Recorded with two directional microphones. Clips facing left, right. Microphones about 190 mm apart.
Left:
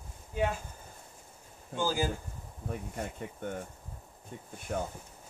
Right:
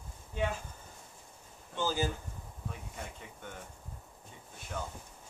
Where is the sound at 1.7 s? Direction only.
10° left (ahead or behind).